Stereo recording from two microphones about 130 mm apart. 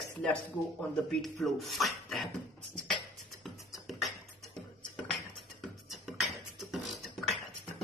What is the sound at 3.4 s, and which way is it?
Beatboxing, centre (ahead or behind).